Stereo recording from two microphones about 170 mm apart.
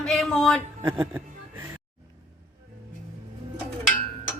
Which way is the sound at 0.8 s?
15° right (ahead or behind).